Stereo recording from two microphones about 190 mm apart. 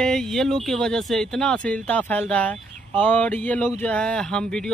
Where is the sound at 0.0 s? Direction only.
5° left (ahead or behind).